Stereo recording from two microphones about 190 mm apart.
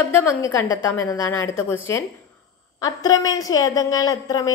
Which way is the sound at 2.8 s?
20° left (ahead or behind).